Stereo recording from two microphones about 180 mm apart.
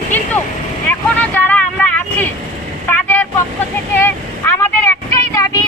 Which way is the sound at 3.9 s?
10° left (ahead or behind).